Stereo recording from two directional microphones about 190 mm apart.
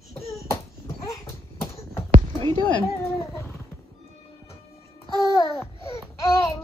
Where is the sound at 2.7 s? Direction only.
15° left (ahead or behind).